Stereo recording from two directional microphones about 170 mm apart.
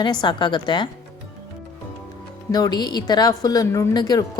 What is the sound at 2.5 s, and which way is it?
A woman's voice, 25° left (ahead or behind).